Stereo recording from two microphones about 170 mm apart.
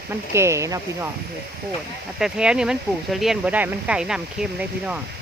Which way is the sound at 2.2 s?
5° right (ahead or behind).